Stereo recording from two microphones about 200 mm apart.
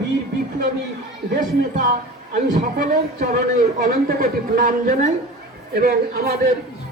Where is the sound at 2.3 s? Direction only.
45° right (ahead or behind).